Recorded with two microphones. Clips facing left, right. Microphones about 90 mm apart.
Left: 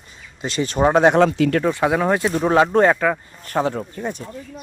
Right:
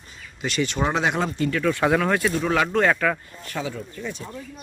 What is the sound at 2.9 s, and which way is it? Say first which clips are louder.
Speech: left 3 dB; 15° left (ahead or behind).